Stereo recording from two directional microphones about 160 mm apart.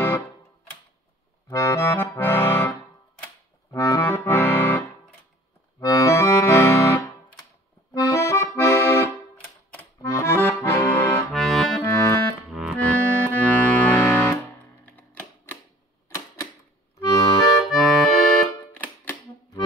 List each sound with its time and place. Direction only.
1.5 s accordion: 20° left (ahead or behind)
3.7 s accordion: 20° left (ahead or behind)
11.3 s accordion: centre (ahead or behind)
11.9 s accordion: 20° left (ahead or behind)
12.4 s music: centre (ahead or behind)
13.3 s music: 10° left (ahead or behind)
17.0 s accordion: 20° left (ahead or behind)
17.6 s accordion: centre (ahead or behind)
18.8 s music: 10° left (ahead or behind)